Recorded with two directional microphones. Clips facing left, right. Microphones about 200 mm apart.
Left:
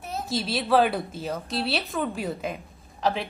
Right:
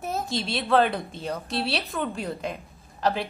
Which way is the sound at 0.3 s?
Centre (ahead or behind).